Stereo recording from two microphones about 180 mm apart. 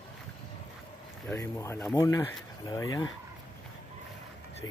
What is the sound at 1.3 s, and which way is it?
Speech, 15° left (ahead or behind).